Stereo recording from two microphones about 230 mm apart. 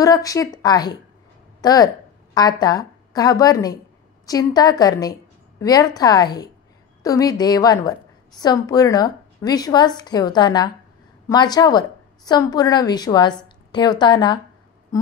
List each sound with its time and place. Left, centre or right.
0.0 s a woman's voice: centre